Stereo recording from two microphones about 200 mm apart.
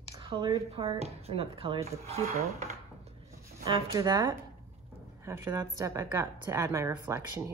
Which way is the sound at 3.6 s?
20° right (ahead or behind).